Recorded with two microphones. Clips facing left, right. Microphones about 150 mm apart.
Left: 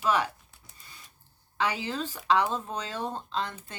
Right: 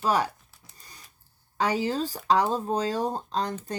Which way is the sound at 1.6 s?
40° right (ahead or behind).